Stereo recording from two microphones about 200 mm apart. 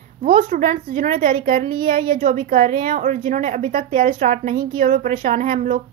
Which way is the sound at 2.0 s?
40° right (ahead or behind).